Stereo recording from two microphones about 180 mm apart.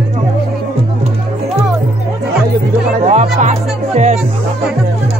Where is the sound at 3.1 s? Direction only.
40° right (ahead or behind).